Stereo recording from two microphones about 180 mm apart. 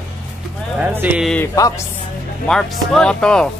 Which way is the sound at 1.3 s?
15° left (ahead or behind).